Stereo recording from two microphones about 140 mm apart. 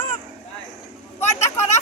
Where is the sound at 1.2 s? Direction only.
50° left (ahead or behind).